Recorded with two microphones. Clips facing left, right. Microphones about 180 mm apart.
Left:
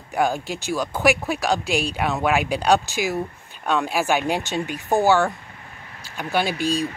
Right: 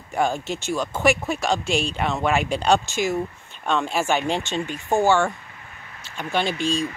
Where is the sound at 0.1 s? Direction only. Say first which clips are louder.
Left 1 dB; 5° left (ahead or behind).